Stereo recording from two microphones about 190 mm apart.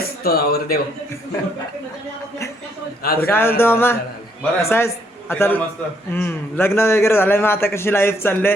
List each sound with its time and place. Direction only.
0.0 s speech: 55° left (ahead or behind)
3.0 s a man's voice: 55° left (ahead or behind)
3.2 s a man's voice: 10° left (ahead or behind)